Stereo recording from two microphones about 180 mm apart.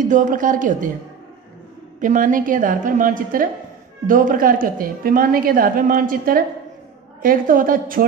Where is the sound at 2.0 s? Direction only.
45° right (ahead or behind).